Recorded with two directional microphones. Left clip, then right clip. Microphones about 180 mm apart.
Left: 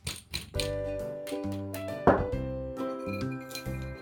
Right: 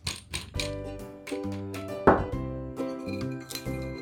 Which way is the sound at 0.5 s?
5° right (ahead or behind).